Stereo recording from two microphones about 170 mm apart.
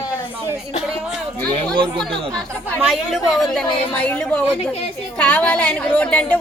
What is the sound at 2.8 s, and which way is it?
A woman's voice, centre (ahead or behind).